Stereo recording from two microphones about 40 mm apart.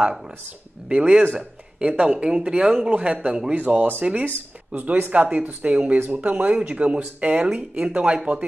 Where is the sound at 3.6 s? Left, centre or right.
Right.